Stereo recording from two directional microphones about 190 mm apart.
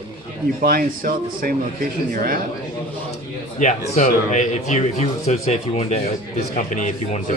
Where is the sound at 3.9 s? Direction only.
40° left (ahead or behind).